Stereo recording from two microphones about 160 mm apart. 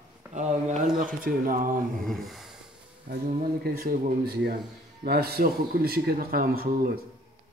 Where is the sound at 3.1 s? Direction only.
65° right (ahead or behind).